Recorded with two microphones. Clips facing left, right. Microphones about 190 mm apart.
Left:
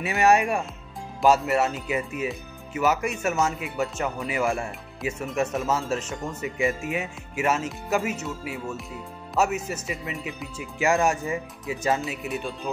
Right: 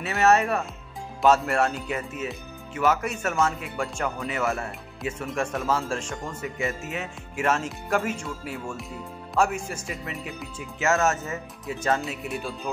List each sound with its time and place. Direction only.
0.0 s speech: 15° left (ahead or behind)
10.8 s speech: 15° left (ahead or behind)
11.6 s speech: 5° left (ahead or behind)